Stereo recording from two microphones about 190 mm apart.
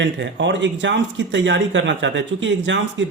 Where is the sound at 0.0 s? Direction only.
70° right (ahead or behind).